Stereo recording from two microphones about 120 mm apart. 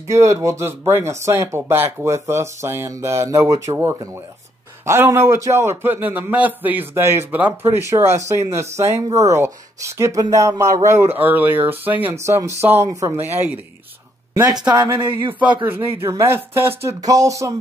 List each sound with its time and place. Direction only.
0.1 s a man's voice: 25° right (ahead or behind)
14.3 s speech: 30° right (ahead or behind)
15.1 s a man's voice: 15° right (ahead or behind)
17.0 s a man's voice: 30° right (ahead or behind)